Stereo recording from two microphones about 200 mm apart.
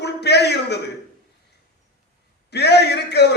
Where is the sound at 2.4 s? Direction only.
55° left (ahead or behind).